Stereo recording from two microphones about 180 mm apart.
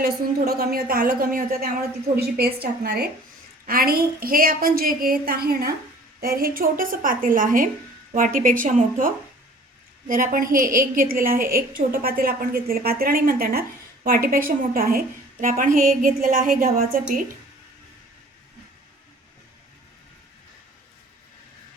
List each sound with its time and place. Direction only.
0.4 s a woman's voice: 60° right (ahead or behind)